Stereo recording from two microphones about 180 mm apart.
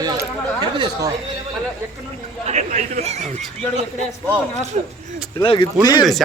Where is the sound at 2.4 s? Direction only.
40° right (ahead or behind).